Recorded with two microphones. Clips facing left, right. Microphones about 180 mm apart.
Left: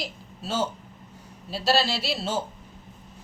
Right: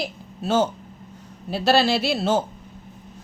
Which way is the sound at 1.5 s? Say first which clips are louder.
Right 5 dB; 55° right (ahead or behind).